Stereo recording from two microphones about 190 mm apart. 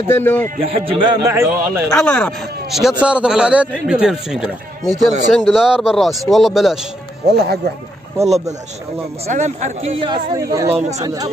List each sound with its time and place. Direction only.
0.1 s speech: 10° left (ahead or behind)
0.6 s speech: 30° right (ahead or behind); by 1.9 s 15° right (ahead or behind)
2.0 s speech: 5° left (ahead or behind)
7.2 s speech: 60° right (ahead or behind)
9.3 s speech: 40° right (ahead or behind); by 11.2 s 20° right (ahead or behind)